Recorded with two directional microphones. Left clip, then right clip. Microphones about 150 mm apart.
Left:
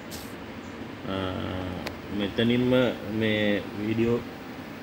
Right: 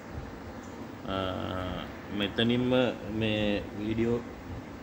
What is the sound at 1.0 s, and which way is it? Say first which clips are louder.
Vehicle: left 1 dB; 10° left (ahead or behind).